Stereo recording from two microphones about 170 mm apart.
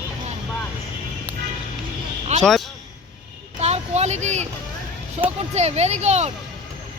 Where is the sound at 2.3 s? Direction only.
40° right (ahead or behind).